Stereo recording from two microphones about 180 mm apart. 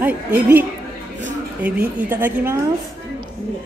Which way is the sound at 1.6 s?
10° right (ahead or behind).